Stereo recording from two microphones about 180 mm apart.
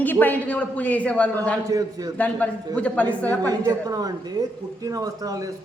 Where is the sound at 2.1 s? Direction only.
10° left (ahead or behind).